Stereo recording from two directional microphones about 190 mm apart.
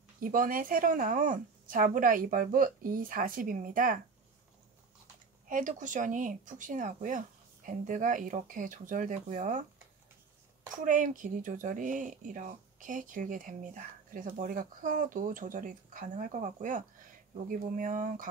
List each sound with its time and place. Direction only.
0.2 s speech: 45° right (ahead or behind)
5.5 s speech: 45° right (ahead or behind)
10.8 s speech: 45° right (ahead or behind)